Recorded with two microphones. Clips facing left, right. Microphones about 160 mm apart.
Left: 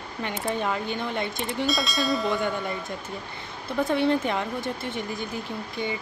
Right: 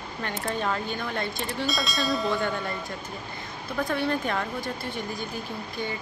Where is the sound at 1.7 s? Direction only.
Centre (ahead or behind).